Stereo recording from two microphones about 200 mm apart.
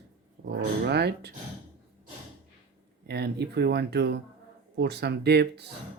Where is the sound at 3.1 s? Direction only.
55° right (ahead or behind).